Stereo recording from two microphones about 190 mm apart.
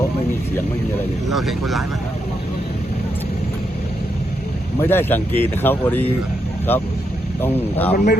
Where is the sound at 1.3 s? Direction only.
Centre (ahead or behind).